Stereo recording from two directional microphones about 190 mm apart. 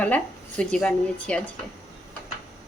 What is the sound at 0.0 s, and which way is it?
Speech, 10° left (ahead or behind).